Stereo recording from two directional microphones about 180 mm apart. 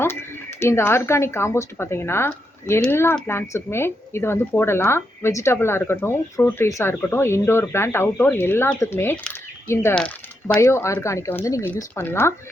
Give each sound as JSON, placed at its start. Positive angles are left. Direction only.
{"t": 0.0, "sound": "speech", "side_deg": 15}
{"t": 10.6, "sound": "speech", "side_deg": 15}